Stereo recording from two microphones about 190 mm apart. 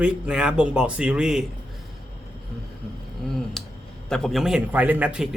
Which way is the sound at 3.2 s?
Centre (ahead or behind).